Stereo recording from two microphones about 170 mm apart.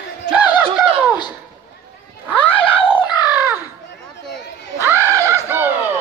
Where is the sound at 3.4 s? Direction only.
15° right (ahead or behind).